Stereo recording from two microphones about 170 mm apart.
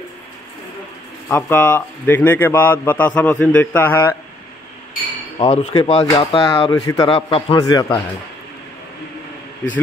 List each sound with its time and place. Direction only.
1.3 s a man's voice: 10° left (ahead or behind)
5.5 s speech: 35° left (ahead or behind)